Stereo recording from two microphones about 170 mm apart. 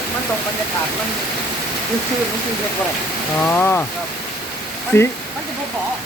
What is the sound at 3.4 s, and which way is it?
Speech, 15° left (ahead or behind).